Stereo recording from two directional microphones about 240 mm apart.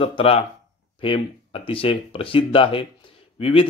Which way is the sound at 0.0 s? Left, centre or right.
Left.